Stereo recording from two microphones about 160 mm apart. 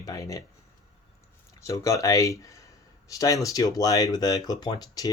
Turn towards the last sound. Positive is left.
turn(degrees=25)  # may be behind; listen again after turning